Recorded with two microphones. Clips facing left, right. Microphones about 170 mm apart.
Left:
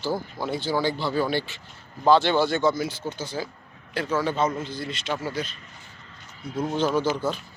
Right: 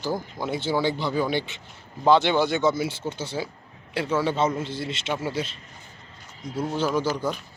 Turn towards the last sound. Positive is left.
turn(degrees=-15)  # may be behind; listen again after turning